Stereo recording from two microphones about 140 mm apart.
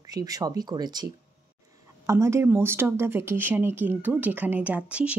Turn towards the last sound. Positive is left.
turn(degrees=-10)  # may be behind; listen again after turning